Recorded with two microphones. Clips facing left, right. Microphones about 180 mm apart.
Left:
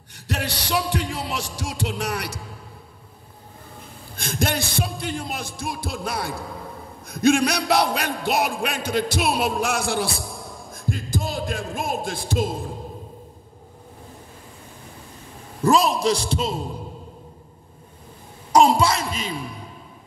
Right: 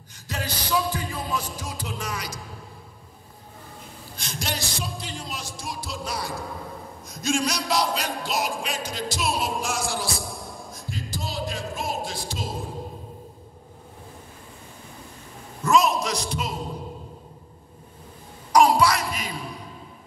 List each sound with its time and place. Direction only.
0.1 s heart sounds: 70° left (ahead or behind)
4.2 s speech: 55° left (ahead or behind)
10.7 s a sound: 50° left (ahead or behind)
15.6 s a man's voice: 30° left (ahead or behind)
18.5 s speech: 25° left (ahead or behind)